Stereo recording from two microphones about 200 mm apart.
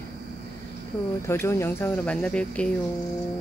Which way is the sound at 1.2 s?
15° left (ahead or behind).